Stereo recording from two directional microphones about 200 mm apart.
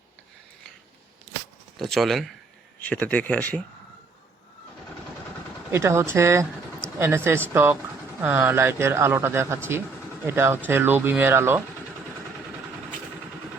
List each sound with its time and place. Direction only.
1.8 s speech: centre (ahead or behind)
5.7 s speech: 15° right (ahead or behind)
6.4 s vehicle: 5° left (ahead or behind)
7.0 s speech: 10° right (ahead or behind)